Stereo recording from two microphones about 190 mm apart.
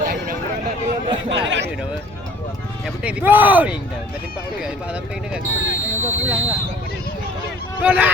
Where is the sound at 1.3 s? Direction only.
75° right (ahead or behind).